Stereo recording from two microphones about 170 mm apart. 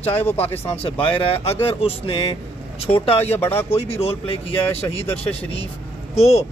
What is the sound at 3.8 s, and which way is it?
Speech, 35° left (ahead or behind).